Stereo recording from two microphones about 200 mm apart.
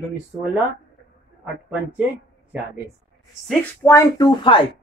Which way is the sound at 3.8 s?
15° left (ahead or behind).